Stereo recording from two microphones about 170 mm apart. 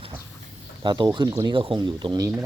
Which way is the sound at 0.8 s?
25° right (ahead or behind).